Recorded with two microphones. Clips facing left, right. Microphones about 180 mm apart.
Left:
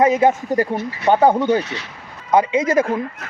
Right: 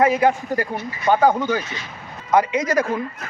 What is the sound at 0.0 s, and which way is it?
Speech, 20° left (ahead or behind).